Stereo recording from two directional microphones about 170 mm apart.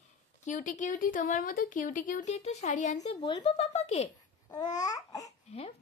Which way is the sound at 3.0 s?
35° left (ahead or behind).